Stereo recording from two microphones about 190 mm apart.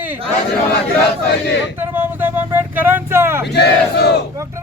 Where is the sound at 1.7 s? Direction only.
10° right (ahead or behind).